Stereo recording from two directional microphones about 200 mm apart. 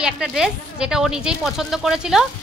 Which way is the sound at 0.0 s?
5° right (ahead or behind).